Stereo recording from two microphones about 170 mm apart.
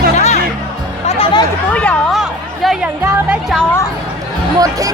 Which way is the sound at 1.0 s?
35° left (ahead or behind).